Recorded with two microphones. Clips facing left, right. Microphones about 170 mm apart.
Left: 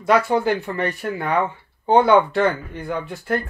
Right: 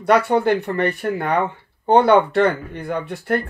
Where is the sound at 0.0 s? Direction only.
60° right (ahead or behind).